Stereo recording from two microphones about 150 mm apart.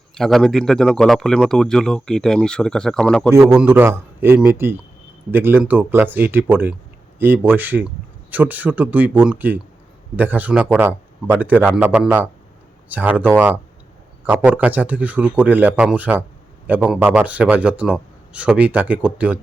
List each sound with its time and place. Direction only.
0.1 s speech: centre (ahead or behind)
3.3 s a man's voice: 15° right (ahead or behind)